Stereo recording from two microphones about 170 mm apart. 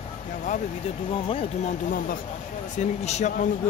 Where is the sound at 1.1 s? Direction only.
30° left (ahead or behind).